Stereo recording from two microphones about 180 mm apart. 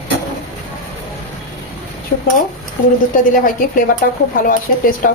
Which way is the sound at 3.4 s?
50° left (ahead or behind).